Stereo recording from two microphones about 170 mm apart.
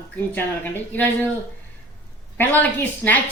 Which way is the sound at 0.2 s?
10° left (ahead or behind).